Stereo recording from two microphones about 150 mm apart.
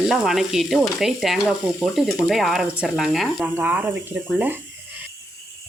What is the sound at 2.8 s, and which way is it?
Speech, 5° right (ahead or behind).